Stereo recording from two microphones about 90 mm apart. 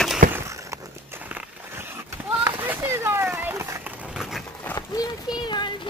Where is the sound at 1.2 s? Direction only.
20° right (ahead or behind).